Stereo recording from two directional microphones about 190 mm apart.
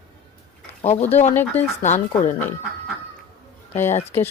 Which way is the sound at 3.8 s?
35° left (ahead or behind).